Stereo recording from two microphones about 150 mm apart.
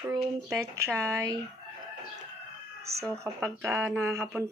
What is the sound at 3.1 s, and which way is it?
Speech, 15° right (ahead or behind).